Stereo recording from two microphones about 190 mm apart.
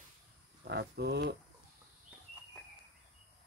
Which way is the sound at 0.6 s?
60° right (ahead or behind).